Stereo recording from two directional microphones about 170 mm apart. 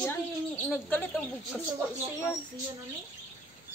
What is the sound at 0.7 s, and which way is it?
Speech, 5° left (ahead or behind).